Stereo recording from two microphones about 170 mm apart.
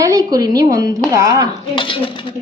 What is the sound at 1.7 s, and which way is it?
Speech, 30° left (ahead or behind).